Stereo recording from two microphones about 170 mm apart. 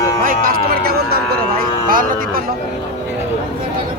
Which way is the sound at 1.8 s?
55° right (ahead or behind).